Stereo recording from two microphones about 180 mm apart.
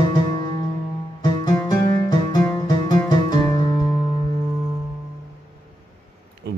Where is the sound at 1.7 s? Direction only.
20° left (ahead or behind).